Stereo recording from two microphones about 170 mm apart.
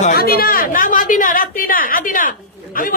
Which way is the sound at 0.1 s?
60° left (ahead or behind).